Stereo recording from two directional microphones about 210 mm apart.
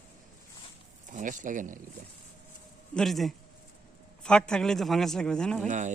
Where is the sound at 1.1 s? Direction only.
35° right (ahead or behind).